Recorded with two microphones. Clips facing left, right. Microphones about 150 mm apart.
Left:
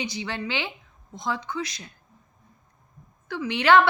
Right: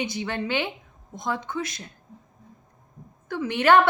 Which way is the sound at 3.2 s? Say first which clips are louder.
Right 1 dB; 50° right (ahead or behind).